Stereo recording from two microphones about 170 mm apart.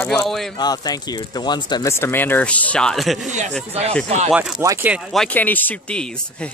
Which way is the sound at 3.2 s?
45° right (ahead or behind).